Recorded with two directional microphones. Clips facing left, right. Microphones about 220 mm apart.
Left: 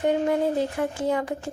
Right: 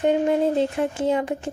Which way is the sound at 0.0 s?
20° right (ahead or behind).